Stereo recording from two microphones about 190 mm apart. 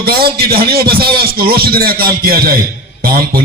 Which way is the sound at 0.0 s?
55° right (ahead or behind).